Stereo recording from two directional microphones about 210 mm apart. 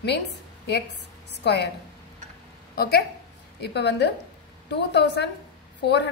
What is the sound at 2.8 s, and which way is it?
A woman's voice, 50° left (ahead or behind).